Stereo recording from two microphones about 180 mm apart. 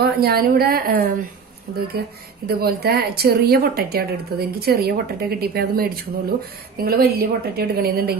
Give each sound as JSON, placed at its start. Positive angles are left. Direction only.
{"t": 0.0, "sound": "speech", "side_deg": -60}